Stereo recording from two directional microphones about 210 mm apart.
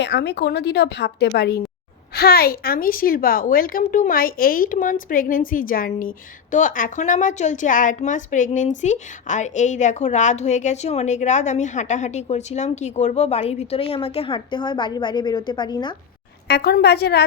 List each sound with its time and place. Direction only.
0.0 s a woman's voice: 55° left (ahead or behind); by 16.0 s 20° left (ahead or behind)
16.5 s a woman's voice: 50° left (ahead or behind)